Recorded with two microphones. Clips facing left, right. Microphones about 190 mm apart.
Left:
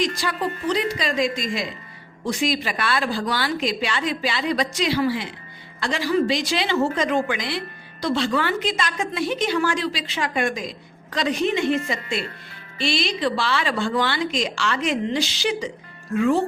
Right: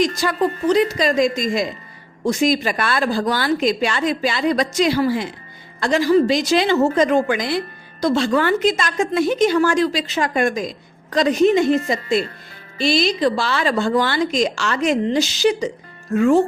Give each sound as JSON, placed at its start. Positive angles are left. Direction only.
{"t": 0.0, "sound": "a woman's voice", "side_deg": -45}